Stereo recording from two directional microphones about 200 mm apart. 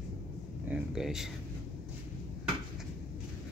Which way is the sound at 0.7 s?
Centre (ahead or behind).